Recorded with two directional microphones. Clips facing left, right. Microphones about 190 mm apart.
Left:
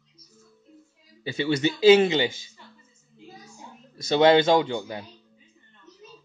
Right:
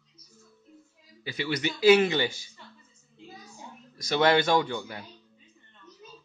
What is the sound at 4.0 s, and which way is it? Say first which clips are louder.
Speech: left 5 dB; 25° left (ahead or behind).